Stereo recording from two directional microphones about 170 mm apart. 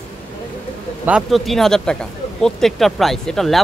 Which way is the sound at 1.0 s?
5° right (ahead or behind).